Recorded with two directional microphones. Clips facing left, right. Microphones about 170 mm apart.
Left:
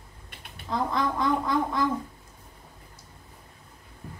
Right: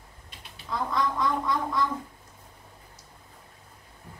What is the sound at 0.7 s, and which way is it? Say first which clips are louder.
Speech: left 1 dB; 25° left (ahead or behind).